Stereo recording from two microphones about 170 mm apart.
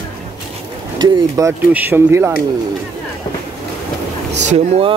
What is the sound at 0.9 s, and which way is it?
Speech, 20° right (ahead or behind).